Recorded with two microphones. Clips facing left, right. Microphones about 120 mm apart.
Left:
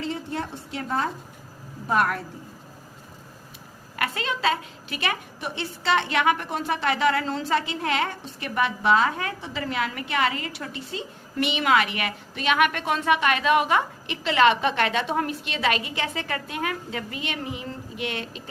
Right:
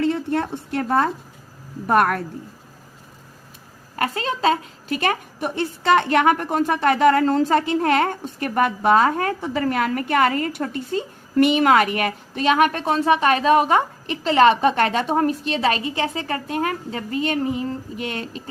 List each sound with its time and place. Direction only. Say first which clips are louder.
0.0 s a woman's voice: right 9 dB; 60° right (ahead or behind)
3.9 s a woman's voice: right 4 dB; 35° right (ahead or behind)